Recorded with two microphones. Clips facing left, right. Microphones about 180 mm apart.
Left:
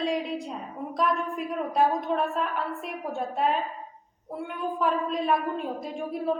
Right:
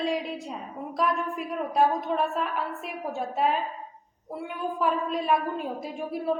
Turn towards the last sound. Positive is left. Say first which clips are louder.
# even
turn(degrees=-5)  # may be behind; listen again after turning